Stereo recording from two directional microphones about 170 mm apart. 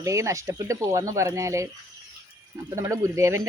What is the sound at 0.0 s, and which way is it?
Speech, 15° right (ahead or behind).